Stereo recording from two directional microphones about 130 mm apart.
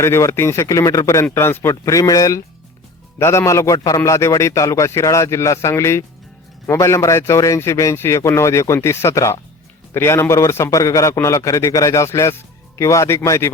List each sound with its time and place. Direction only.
0.0 s a man's voice: 20° left (ahead or behind)